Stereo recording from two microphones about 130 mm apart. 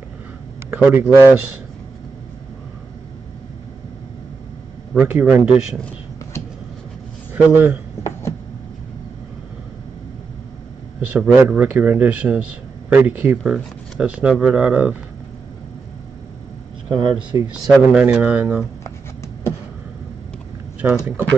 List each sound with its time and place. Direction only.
0.7 s speech: 5° right (ahead or behind)
4.9 s speech: 10° right (ahead or behind)
7.3 s speech: 15° right (ahead or behind)
11.0 s speech: 10° right (ahead or behind)
16.9 s speech: 40° right (ahead or behind)
17.6 s speech: 5° right (ahead or behind)
20.8 s speech: 10° right (ahead or behind)